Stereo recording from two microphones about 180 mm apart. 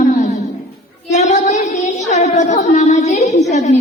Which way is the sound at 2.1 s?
40° left (ahead or behind).